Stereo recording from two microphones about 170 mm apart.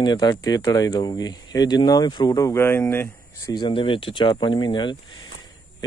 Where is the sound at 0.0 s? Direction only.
25° left (ahead or behind).